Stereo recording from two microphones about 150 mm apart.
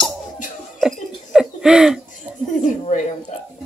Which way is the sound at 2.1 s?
55° left (ahead or behind).